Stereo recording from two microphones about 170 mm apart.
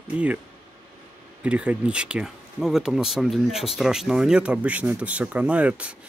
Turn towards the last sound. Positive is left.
turn(degrees=-10)  # may be behind; listen again after turning